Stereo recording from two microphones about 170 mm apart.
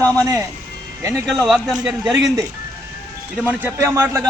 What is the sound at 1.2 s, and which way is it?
A man's voice, centre (ahead or behind).